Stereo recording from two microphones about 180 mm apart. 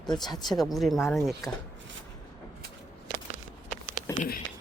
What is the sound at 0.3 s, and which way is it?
Speech, 25° left (ahead or behind).